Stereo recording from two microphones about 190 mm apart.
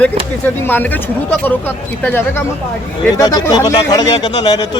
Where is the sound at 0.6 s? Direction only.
10° left (ahead or behind).